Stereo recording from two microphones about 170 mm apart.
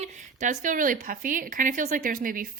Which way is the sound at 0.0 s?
45° right (ahead or behind).